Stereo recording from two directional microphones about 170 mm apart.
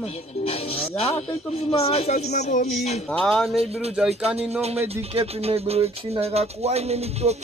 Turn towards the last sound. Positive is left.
turn(degrees=-40)  # may be behind; listen again after turning